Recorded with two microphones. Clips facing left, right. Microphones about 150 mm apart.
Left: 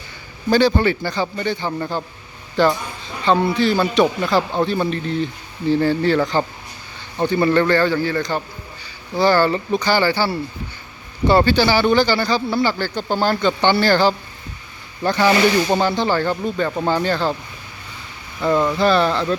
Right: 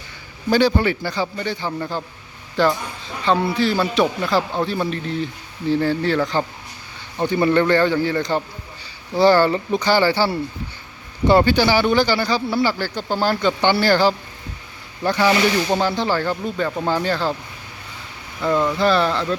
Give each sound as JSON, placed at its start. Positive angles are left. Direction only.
{"t": 0.5, "sound": "a man's voice", "side_deg": -10}
{"t": 7.3, "sound": "a man's voice", "side_deg": -15}
{"t": 18.4, "sound": "a man's voice", "side_deg": 0}